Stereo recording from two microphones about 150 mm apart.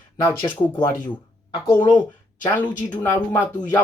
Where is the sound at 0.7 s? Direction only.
30° left (ahead or behind).